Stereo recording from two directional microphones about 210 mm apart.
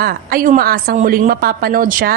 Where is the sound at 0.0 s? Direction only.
45° right (ahead or behind).